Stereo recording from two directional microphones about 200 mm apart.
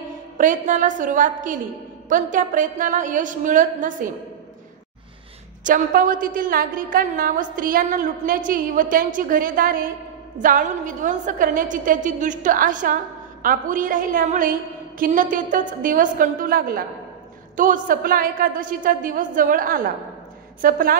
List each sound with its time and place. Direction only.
0.4 s a woman's voice: 40° right (ahead or behind)
5.6 s a woman's voice: 40° right (ahead or behind)